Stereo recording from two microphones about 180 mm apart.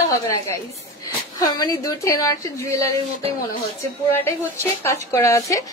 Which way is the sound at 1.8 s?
20° left (ahead or behind).